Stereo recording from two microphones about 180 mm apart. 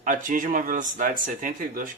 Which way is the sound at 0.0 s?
45° right (ahead or behind).